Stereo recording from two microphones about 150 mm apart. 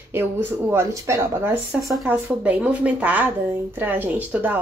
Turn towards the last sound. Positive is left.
turn(degrees=-10)  # may be behind; listen again after turning